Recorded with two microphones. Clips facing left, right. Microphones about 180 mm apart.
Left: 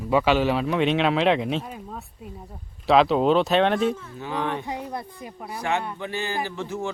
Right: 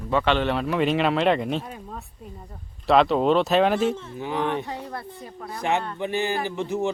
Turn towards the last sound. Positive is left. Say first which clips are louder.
# right 3 dB
turn(degrees=-15)  # may be behind; listen again after turning